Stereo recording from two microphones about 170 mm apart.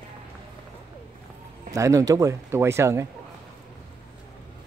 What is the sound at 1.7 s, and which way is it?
Speech, 20° right (ahead or behind).